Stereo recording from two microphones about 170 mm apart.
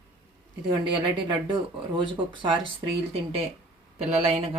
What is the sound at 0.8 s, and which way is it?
A woman's voice, 30° right (ahead or behind).